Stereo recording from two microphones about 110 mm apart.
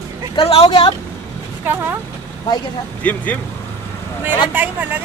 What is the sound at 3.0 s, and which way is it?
Speech, 15° left (ahead or behind).